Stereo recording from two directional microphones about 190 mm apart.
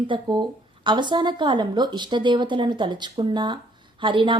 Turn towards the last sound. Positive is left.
turn(degrees=-25)  # may be behind; listen again after turning